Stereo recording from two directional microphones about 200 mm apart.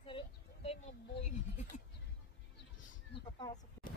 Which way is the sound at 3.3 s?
20° left (ahead or behind).